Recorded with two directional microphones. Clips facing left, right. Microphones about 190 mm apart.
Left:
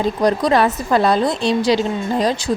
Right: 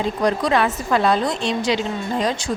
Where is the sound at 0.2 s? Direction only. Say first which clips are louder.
Left 3 dB; 40° left (ahead or behind).